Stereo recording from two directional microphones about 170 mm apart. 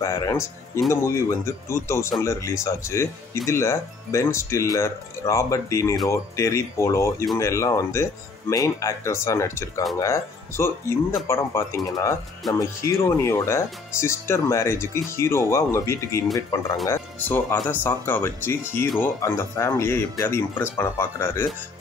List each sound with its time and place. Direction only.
0.0 s speech: 15° left (ahead or behind)